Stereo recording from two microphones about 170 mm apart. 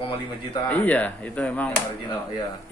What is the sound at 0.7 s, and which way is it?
Speech, 10° left (ahead or behind).